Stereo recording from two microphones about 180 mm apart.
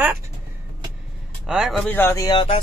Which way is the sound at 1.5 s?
Centre (ahead or behind).